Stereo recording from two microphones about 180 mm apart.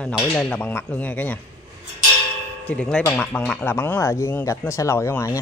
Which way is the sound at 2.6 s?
5° left (ahead or behind).